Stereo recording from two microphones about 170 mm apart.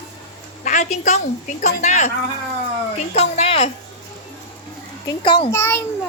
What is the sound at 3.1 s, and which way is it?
Speech, 40° left (ahead or behind).